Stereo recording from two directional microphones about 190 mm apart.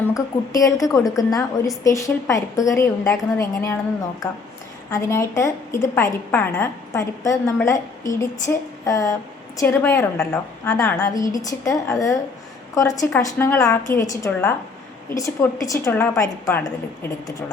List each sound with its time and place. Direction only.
0.0 s a woman's voice: 15° left (ahead or behind)
4.9 s a woman's voice: 15° left (ahead or behind)
8.8 s a woman's voice: 15° left (ahead or behind)